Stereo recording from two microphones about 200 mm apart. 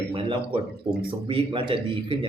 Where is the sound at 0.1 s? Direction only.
25° right (ahead or behind).